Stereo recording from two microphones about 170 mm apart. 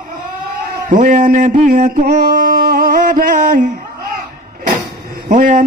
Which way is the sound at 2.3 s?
60° right (ahead or behind).